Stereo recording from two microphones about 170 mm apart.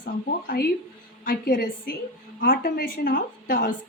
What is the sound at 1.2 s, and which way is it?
Speech, 65° left (ahead or behind).